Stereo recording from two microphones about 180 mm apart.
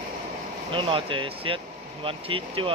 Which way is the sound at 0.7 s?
30° right (ahead or behind).